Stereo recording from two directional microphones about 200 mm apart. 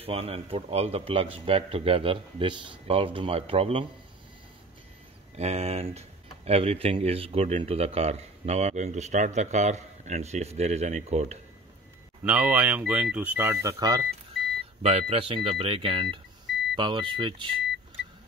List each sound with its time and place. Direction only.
0.0 s a man's voice: 30° right (ahead or behind)
5.3 s speech: 35° right (ahead or behind)
12.3 s speech: 5° right (ahead or behind)
14.8 s a man's voice: 30° right (ahead or behind)